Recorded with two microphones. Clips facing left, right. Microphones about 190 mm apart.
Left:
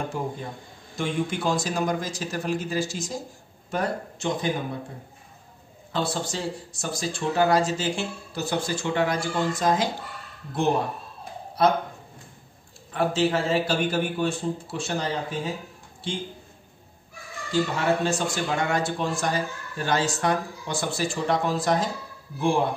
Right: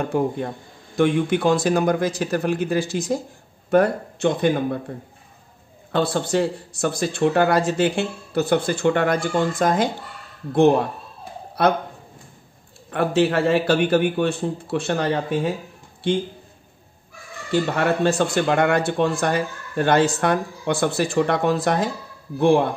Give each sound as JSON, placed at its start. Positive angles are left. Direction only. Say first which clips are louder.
{"t": 0.1, "sound": "a man's voice", "louder": "right 9 dB", "side_deg": -60}
{"t": 5.9, "sound": "a man's voice", "louder": "right 6 dB", "side_deg": -60}
{"t": 11.6, "sound": "a man's voice", "louder": "right 2 dB", "side_deg": -65}
{"t": 12.9, "sound": "a man's voice", "louder": "right 4 dB", "side_deg": -60}
{"t": 17.5, "sound": "a man's voice", "louder": "right 3 dB", "side_deg": -65}